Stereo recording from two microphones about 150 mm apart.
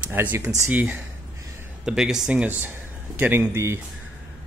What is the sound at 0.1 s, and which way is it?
Speech, 15° right (ahead or behind).